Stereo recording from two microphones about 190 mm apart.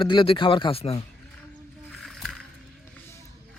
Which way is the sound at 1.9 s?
Centre (ahead or behind).